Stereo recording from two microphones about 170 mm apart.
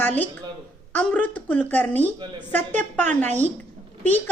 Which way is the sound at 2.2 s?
25° right (ahead or behind).